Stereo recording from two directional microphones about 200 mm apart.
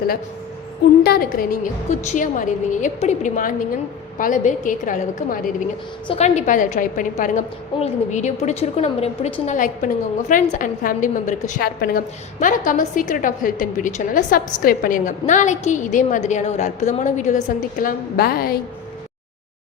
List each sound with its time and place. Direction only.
1.0 s a woman's voice: 50° left (ahead or behind)